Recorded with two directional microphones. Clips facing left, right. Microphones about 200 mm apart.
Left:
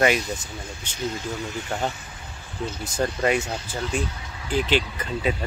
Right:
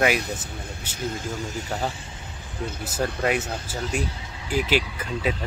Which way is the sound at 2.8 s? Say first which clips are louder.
Left 2 dB; 5° right (ahead or behind).